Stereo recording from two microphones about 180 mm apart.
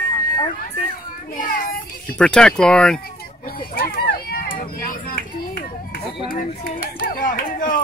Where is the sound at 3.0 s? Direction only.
55° left (ahead or behind).